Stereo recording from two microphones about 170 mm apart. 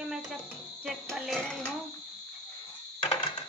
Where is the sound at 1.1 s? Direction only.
Centre (ahead or behind).